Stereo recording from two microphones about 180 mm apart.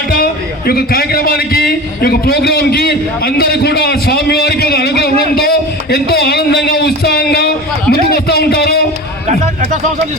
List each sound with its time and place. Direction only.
0.7 s a man's voice: 55° left (ahead or behind)